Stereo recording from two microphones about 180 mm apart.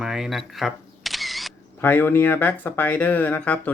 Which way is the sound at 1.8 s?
10° left (ahead or behind).